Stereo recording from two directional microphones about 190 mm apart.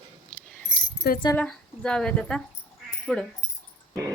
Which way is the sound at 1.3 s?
5° left (ahead or behind).